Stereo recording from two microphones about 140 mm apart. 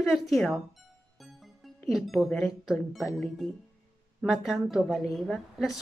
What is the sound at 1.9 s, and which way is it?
A woman's voice, centre (ahead or behind).